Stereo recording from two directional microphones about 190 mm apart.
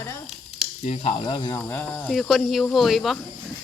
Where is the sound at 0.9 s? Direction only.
30° left (ahead or behind).